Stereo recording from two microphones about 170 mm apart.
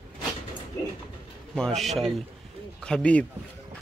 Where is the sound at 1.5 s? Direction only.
5° left (ahead or behind).